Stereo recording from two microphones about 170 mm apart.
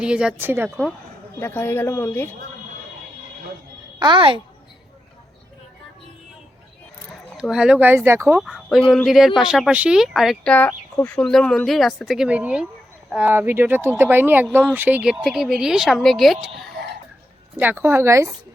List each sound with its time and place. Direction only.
0.0 s speech: 5° right (ahead or behind)
1.4 s a woman's voice: 10° left (ahead or behind)
4.0 s a woman's voice: 30° right (ahead or behind)
7.3 s speech: 5° right (ahead or behind)
8.4 s speech: centre (ahead or behind)
17.6 s speech: 10° right (ahead or behind)